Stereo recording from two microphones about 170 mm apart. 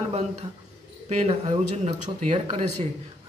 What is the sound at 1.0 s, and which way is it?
Speech, 40° right (ahead or behind).